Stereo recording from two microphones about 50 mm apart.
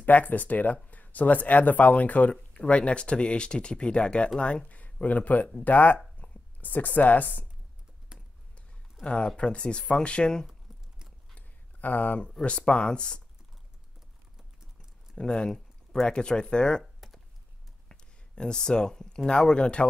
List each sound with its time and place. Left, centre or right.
0.0 s speech: left
6.1 s a sound: left
8.1 s a sound: centre
9.0 s speech: left
11.3 s a sound: left
12.4 s speech: left
15.1 s speech: centre
16.8 s computer keyboard: centre
17.8 s speech: centre